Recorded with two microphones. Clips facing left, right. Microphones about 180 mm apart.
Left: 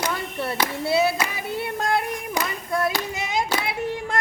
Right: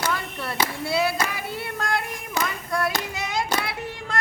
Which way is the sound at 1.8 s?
20° left (ahead or behind).